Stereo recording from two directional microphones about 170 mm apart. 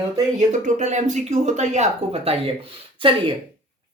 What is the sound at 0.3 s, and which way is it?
Speech, 40° right (ahead or behind).